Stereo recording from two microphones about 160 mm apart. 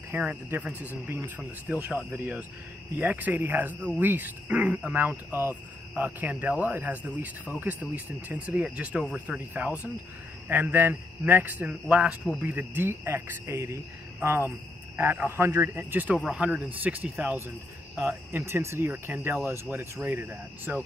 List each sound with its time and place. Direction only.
0.1 s speech: 10° right (ahead or behind)